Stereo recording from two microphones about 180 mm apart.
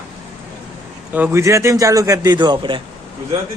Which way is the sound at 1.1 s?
10° right (ahead or behind).